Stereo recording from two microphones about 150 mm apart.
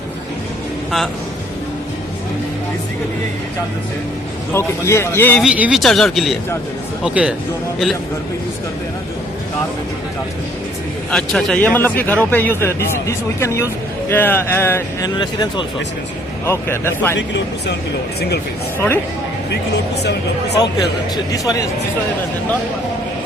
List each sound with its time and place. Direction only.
0.9 s speech: centre (ahead or behind)
4.5 s a man's voice: 20° left (ahead or behind)
5.4 s speech: 5° right (ahead or behind)
11.1 s a man's voice: 5° left (ahead or behind)
15.2 s speech: 30° left (ahead or behind)
16.5 s a man's voice: 15° left (ahead or behind)
20.0 s speech: 90° left
21.3 s speech: 25° left (ahead or behind)